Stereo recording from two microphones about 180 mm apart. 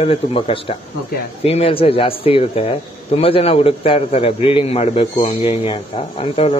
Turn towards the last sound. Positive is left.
turn(degrees=35)  # may be behind; listen again after turning